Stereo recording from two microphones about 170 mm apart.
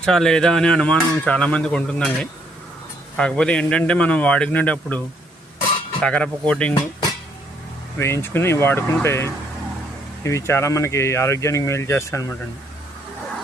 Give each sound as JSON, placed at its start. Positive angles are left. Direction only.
{"t": 0.0, "sound": "speech", "side_deg": 5}
{"t": 3.2, "sound": "speech", "side_deg": 5}
{"t": 7.9, "sound": "speech", "side_deg": 15}